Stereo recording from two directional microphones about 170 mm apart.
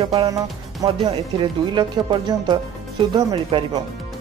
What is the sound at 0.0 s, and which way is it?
Speech, 25° right (ahead or behind).